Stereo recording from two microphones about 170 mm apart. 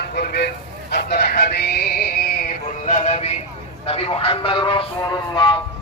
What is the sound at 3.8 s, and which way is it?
Speech, 35° left (ahead or behind).